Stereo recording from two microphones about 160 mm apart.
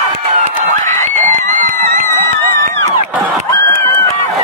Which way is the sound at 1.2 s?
55° right (ahead or behind).